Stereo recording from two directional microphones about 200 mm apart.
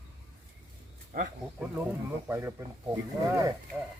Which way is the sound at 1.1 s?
45° right (ahead or behind).